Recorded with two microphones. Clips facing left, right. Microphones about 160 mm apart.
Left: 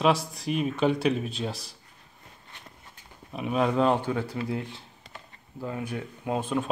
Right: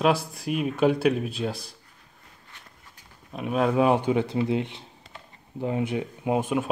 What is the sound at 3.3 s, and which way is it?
Speech, centre (ahead or behind).